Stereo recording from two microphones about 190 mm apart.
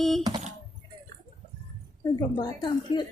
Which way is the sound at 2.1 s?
25° left (ahead or behind).